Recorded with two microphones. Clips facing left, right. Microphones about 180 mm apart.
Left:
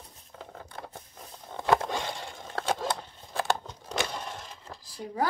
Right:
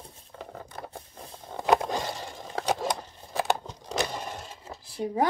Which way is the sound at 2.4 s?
15° right (ahead or behind).